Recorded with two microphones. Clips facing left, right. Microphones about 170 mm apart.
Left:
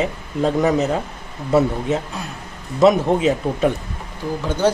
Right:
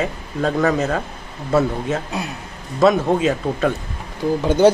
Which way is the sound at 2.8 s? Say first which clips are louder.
Left 1 dB; 20° left (ahead or behind).